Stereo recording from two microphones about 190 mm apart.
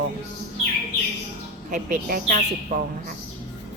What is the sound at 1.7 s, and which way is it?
Speech, 45° right (ahead or behind).